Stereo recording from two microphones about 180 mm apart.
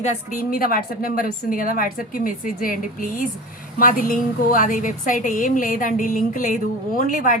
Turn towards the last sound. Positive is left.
turn(degrees=50)  # may be behind; listen again after turning